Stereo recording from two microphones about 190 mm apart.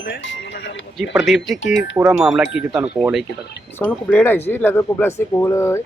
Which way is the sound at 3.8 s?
10° left (ahead or behind).